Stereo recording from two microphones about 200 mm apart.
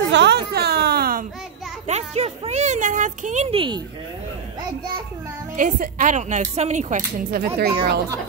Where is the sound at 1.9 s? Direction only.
30° right (ahead or behind).